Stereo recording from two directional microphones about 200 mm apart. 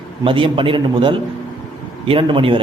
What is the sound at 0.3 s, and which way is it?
A man's voice, 25° right (ahead or behind).